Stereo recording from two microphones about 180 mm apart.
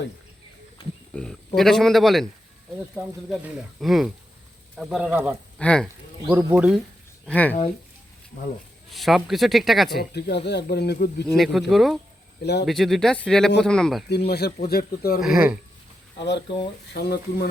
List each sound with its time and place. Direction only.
1.1 s speech: 5° left (ahead or behind)
5.5 s speech: 5° left (ahead or behind)
6.3 s speech: 10° right (ahead or behind)
7.3 s speech: 10° left (ahead or behind)
8.9 s speech: centre (ahead or behind)
10.0 s speech: 65° left (ahead or behind)
11.3 s speech: centre (ahead or behind)
12.4 s speech: 65° left (ahead or behind)
12.6 s speech: centre (ahead or behind)
14.1 s speech: 65° left (ahead or behind)
15.2 s speech: 5° right (ahead or behind)
16.1 s speech: 75° left (ahead or behind)
16.9 s speech: 65° left (ahead or behind)